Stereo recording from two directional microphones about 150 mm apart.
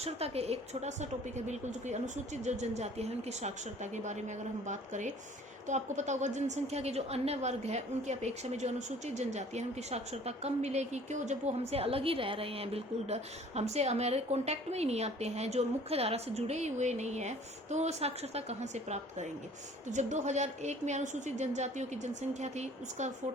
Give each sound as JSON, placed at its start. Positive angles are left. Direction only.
{"t": 0.0, "sound": "a woman's voice", "side_deg": -45}